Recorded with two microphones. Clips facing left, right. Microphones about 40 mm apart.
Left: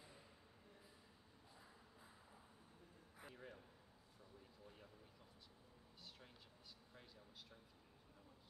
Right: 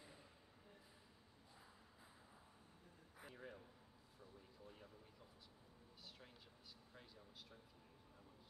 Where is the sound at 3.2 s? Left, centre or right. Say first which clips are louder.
Right 1 dB; centre.